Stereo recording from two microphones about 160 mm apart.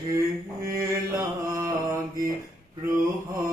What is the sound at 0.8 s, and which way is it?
Mantra, 20° right (ahead or behind).